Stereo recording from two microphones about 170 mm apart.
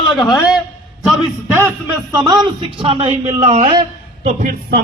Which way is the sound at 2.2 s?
25° right (ahead or behind).